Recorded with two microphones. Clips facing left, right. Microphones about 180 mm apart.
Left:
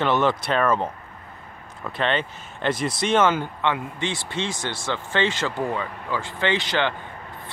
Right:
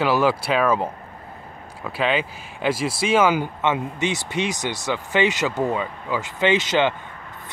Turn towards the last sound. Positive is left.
turn(degrees=-20)  # may be behind; listen again after turning